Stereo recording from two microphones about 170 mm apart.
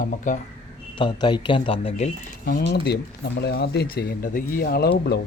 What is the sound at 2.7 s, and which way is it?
Speech, 80° left.